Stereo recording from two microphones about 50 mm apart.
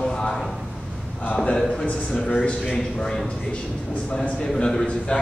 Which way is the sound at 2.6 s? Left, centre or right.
Centre.